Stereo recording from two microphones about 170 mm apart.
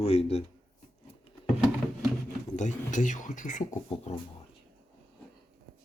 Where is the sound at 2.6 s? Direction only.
45° left (ahead or behind).